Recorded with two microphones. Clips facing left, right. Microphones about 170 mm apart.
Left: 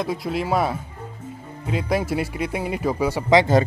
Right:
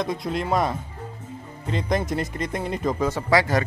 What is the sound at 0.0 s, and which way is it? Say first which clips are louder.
Speech: left 1 dB; 5° left (ahead or behind).